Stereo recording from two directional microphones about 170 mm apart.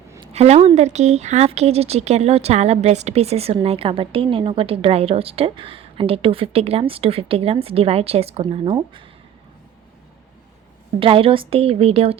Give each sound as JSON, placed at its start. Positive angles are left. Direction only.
{"t": 0.2, "sound": "a woman's voice", "side_deg": -40}
{"t": 11.0, "sound": "a woman's voice", "side_deg": -30}